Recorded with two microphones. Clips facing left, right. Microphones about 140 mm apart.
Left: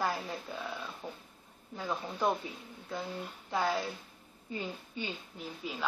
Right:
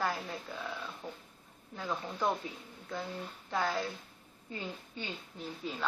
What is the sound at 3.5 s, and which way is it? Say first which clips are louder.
Speech: left 1 dB; 10° left (ahead or behind).